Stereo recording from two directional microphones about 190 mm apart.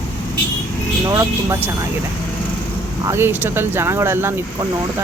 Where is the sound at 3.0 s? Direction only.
15° right (ahead or behind).